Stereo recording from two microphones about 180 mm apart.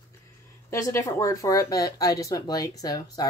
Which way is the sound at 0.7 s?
15° left (ahead or behind).